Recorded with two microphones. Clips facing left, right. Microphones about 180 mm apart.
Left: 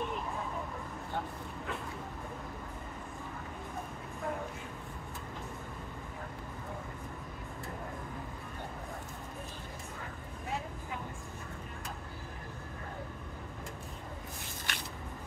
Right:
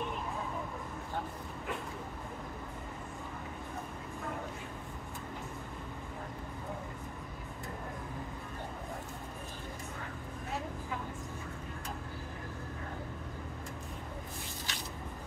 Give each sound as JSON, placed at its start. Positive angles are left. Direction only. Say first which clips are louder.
{"t": 14.7, "sound": "spray", "louder": "left 4 dB", "side_deg": 60}